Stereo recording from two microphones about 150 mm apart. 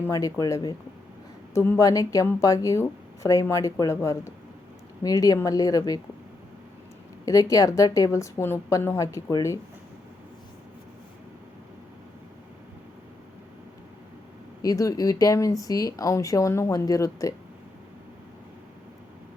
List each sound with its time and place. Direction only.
0.0 s speech: 20° left (ahead or behind)
7.3 s speech: 20° left (ahead or behind)
14.6 s speech: 25° left (ahead or behind)